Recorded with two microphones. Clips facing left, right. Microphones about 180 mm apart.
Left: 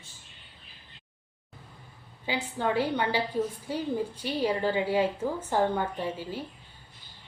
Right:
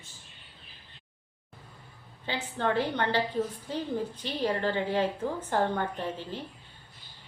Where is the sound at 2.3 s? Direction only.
10° left (ahead or behind).